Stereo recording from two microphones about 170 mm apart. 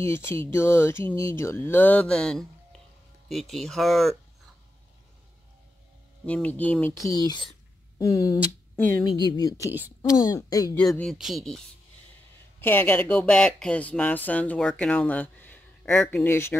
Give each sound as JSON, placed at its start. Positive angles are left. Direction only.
{"t": 0.0, "sound": "speech", "side_deg": 15}
{"t": 6.2, "sound": "speech", "side_deg": 10}
{"t": 9.7, "sound": "a woman's voice", "side_deg": -10}
{"t": 10.2, "sound": "speech", "side_deg": 20}
{"t": 10.9, "sound": "speech", "side_deg": 0}